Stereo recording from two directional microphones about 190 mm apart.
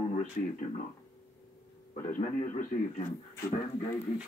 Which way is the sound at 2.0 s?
45° left (ahead or behind).